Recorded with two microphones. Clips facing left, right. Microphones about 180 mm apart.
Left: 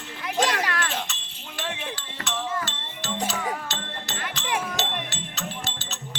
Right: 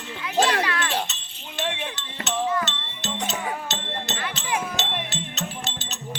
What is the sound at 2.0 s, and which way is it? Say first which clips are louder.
Music: right 5 dB; 20° right (ahead or behind).